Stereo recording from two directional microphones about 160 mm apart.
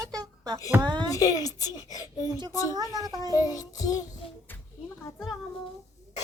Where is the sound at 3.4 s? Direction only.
20° left (ahead or behind).